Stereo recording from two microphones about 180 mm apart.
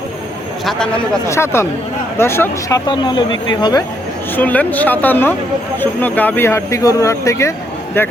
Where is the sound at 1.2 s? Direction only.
15° left (ahead or behind).